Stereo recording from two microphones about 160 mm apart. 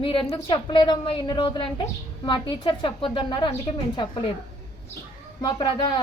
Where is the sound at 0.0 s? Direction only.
35° left (ahead or behind).